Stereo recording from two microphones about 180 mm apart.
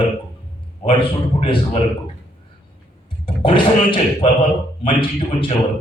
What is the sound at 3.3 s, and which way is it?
A man's voice, 30° left (ahead or behind).